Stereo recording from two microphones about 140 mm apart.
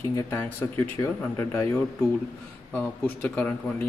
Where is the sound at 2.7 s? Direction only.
15° left (ahead or behind).